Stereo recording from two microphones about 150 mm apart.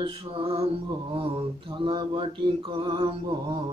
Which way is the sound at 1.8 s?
35° right (ahead or behind).